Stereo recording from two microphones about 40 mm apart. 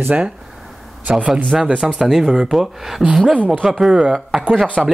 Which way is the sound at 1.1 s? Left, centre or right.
Centre.